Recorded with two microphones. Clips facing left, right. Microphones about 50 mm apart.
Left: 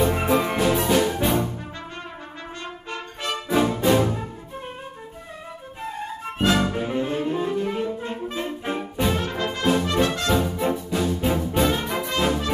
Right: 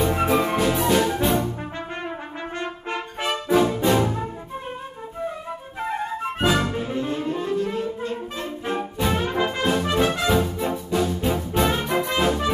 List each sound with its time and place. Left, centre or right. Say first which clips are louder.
0.0 s music: even; centre
2.6 s brass instrument: right 4 dB; centre
3.4 s music: right 1 dB; centre
5.8 s flute: right 5 dB; right
6.4 s music: left 1 dB; centre
6.8 s saxophone: left 1 dB; centre
7.5 s music: even; centre
8.0 s saxophone: even; centre
9.1 s brass instrument: right 3 dB; centre
10.4 s music: left 1 dB; centre